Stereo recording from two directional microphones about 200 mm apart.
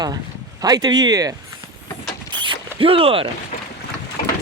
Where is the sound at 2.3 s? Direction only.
25° right (ahead or behind).